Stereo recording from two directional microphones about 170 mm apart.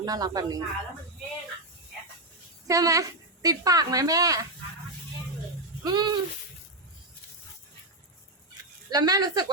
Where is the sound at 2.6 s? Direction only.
20° right (ahead or behind).